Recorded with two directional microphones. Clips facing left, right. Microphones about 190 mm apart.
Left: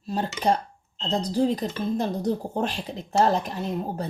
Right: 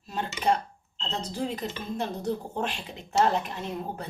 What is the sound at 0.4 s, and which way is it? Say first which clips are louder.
Speech: even; 35° left (ahead or behind).